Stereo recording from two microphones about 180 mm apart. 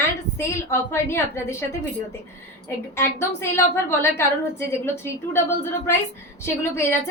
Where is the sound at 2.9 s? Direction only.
15° left (ahead or behind).